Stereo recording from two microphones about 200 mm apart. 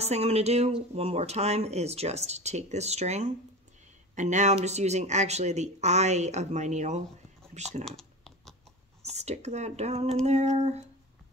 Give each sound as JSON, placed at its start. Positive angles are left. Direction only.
{"t": 0.0, "sound": "speech", "side_deg": -30}
{"t": 7.8, "sound": "computer keyboard", "side_deg": 5}
{"t": 9.0, "sound": "speech", "side_deg": -35}